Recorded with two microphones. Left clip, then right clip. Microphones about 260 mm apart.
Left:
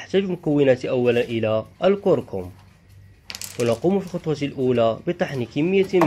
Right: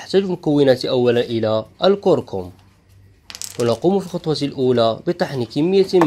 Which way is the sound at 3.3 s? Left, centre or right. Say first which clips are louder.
Right 3 dB; centre.